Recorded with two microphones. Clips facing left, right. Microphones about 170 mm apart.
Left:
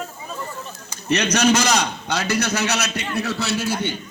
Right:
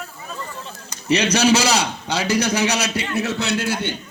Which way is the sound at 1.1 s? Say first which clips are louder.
Right 1 dB; 10° right (ahead or behind).